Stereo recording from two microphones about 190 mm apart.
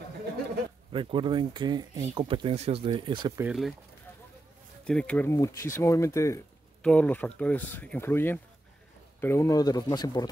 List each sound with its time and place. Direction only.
0.9 s speech: 25° right (ahead or behind)
3.4 s speech: centre (ahead or behind)
4.8 s speech: 5° left (ahead or behind); by 10.2 s 20° left (ahead or behind)